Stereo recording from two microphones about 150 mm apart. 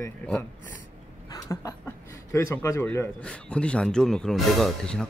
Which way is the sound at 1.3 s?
20° left (ahead or behind).